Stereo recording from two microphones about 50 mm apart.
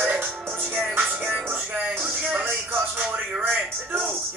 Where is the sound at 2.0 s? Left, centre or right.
Centre.